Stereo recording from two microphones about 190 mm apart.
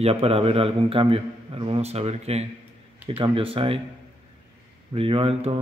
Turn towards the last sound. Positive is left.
turn(degrees=-30)  # may be behind; listen again after turning